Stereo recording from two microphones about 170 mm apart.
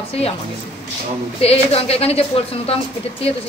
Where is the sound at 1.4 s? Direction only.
35° left (ahead or behind).